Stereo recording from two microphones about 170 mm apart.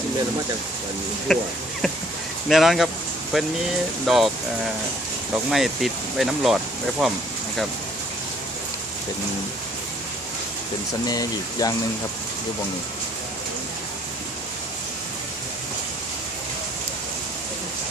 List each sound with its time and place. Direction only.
1.3 s speech: centre (ahead or behind)
5.5 s speech: centre (ahead or behind)
11.1 s speech: 20° left (ahead or behind)